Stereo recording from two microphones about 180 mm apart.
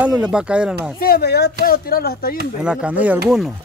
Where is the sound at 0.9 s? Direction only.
55° left (ahead or behind).